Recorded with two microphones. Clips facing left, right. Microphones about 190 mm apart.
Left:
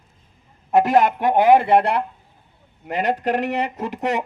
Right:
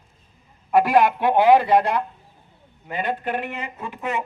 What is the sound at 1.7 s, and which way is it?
Speech, 60° left (ahead or behind).